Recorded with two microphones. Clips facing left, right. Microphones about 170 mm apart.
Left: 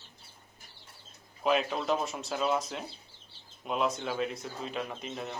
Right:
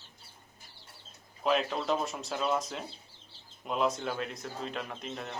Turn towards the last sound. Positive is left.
turn(degrees=0)  # may be behind; listen again after turning